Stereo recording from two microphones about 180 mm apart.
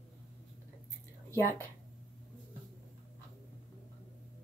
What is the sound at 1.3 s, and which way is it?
Speech, 15° right (ahead or behind).